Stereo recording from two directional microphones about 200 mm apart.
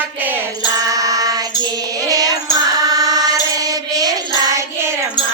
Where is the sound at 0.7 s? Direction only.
15° right (ahead or behind).